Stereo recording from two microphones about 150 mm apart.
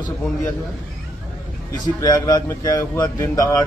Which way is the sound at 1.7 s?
25° left (ahead or behind).